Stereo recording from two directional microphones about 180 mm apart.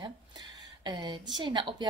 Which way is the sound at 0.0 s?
25° right (ahead or behind).